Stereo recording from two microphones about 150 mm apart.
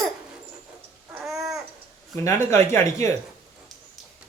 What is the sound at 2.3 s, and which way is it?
Speech, 15° left (ahead or behind).